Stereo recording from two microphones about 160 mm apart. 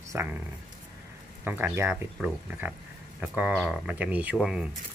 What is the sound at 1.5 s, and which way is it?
Speech, 10° right (ahead or behind).